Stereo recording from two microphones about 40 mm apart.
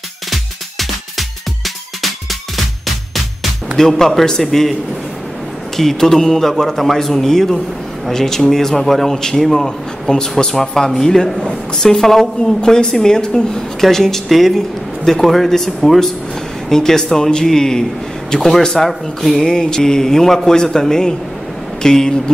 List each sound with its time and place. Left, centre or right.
0.3 s music: centre
4.0 s a man's voice: centre
5.8 s a man's voice: centre
10.1 s speech: left
10.5 s a man's voice: centre
19.4 s a man's voice: centre